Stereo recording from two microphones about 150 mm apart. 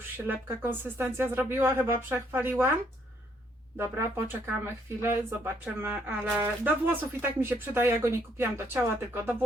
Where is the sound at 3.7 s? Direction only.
15° right (ahead or behind).